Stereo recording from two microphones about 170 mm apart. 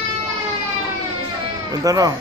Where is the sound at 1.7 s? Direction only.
20° right (ahead or behind).